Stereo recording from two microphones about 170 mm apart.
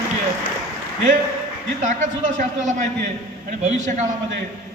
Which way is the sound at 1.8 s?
50° right (ahead or behind).